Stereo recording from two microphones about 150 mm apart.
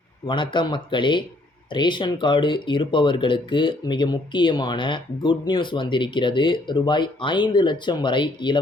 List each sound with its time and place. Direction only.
0.3 s speech: 30° left (ahead or behind)